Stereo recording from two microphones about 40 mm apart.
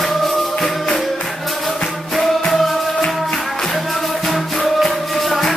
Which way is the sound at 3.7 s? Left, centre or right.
Centre.